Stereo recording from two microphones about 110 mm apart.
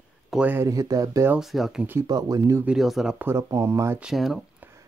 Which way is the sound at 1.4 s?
Centre (ahead or behind).